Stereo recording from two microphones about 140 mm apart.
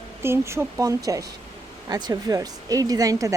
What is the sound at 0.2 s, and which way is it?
A woman's voice, 20° right (ahead or behind).